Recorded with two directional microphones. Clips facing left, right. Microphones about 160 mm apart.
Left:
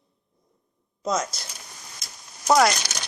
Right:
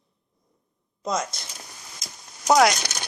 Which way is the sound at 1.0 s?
Centre (ahead or behind).